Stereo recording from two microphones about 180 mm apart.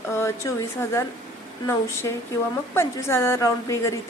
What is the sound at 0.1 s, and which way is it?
A woman's voice, 15° left (ahead or behind).